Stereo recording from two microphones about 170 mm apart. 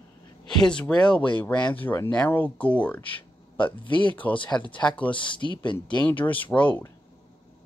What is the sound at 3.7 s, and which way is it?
Speech, 30° left (ahead or behind).